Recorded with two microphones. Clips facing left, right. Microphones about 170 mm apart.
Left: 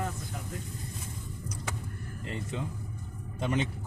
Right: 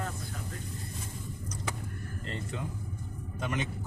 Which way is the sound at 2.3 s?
10° left (ahead or behind).